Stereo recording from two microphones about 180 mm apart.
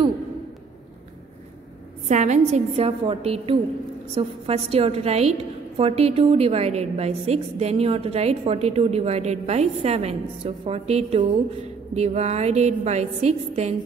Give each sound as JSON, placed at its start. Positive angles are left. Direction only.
{"t": 2.0, "sound": "a woman's voice", "side_deg": -40}